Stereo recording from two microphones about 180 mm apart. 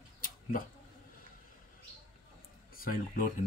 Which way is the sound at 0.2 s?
50° left (ahead or behind).